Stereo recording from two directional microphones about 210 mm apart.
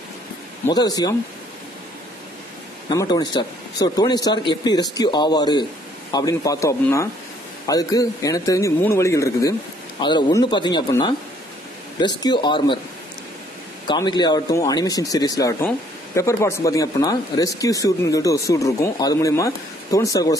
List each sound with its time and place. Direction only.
0.7 s speech: 20° left (ahead or behind)
2.9 s speech: 20° left (ahead or behind)
12.2 s speech: 20° left (ahead or behind)
13.8 s speech: 20° left (ahead or behind)